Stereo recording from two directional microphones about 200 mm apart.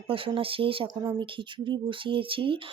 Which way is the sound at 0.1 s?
25° right (ahead or behind).